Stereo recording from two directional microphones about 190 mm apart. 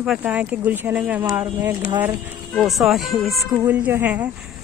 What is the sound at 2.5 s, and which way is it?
Speech, centre (ahead or behind).